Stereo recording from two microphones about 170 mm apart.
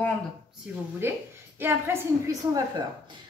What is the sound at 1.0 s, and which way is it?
A woman's voice, 15° right (ahead or behind).